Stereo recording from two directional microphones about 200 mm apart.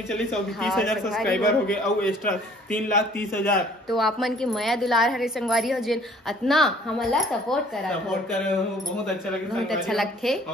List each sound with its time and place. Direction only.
0.1 s a man's voice: centre (ahead or behind)
9.0 s a man's voice: centre (ahead or behind)